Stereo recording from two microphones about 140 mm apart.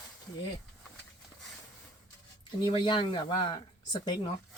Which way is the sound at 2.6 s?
35° left (ahead or behind).